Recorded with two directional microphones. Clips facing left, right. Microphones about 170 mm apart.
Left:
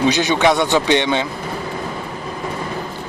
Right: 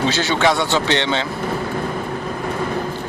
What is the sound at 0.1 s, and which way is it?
Speech, 15° left (ahead or behind).